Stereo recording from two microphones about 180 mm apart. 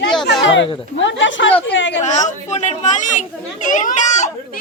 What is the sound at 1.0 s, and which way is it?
Speech, 90° left.